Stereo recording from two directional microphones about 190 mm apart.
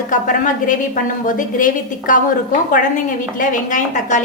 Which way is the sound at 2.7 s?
45° left (ahead or behind).